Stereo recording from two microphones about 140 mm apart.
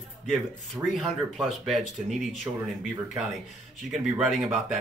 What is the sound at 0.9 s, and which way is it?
Speech, centre (ahead or behind).